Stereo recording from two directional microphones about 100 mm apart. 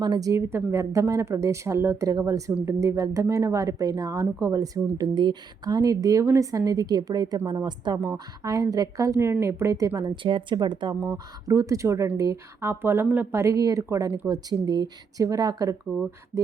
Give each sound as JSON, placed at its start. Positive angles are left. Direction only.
{"t": 0.0, "sound": "speech", "side_deg": -40}
{"t": 4.9, "sound": "speech", "side_deg": -45}
{"t": 9.9, "sound": "speech", "side_deg": -55}
{"t": 11.1, "sound": "speech", "side_deg": -35}